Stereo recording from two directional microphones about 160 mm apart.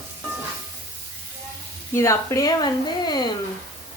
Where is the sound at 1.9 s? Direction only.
15° left (ahead or behind).